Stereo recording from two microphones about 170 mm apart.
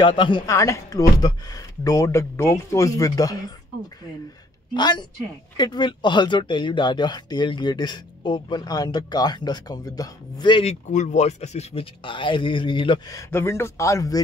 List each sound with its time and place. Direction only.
0.0 s speech: 25° left (ahead or behind)
4.7 s speech: 25° left (ahead or behind)
13.2 s a man's voice: 15° left (ahead or behind)